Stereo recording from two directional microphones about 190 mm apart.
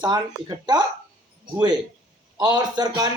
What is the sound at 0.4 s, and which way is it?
Speech, 20° right (ahead or behind).